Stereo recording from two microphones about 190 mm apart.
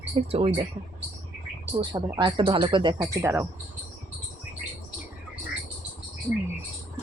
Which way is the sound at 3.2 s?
10° right (ahead or behind).